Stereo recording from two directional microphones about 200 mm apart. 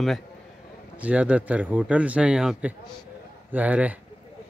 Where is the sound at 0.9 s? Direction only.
5° right (ahead or behind).